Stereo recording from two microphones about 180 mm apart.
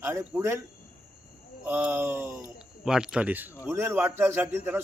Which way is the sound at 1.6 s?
10° right (ahead or behind).